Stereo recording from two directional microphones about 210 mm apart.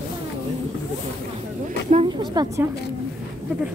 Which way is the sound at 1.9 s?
25° right (ahead or behind).